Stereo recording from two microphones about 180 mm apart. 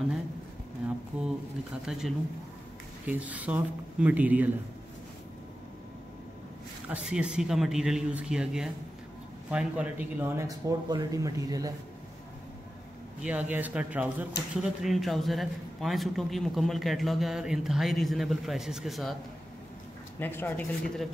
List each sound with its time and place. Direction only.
1.9 s a man's voice: centre (ahead or behind)
6.9 s a man's voice: 5° right (ahead or behind)
13.2 s a man's voice: 10° right (ahead or behind)
20.2 s speech: 10° left (ahead or behind)